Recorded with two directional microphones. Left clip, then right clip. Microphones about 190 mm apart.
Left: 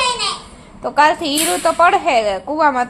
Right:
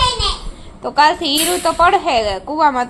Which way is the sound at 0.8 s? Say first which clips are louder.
Even; 10° left (ahead or behind).